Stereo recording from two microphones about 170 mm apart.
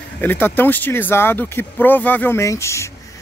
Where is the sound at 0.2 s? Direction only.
10° left (ahead or behind).